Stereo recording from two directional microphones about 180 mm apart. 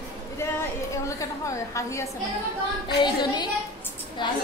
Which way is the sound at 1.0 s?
15° left (ahead or behind).